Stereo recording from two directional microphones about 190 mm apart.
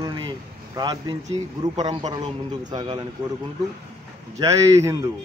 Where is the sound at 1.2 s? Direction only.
35° right (ahead or behind).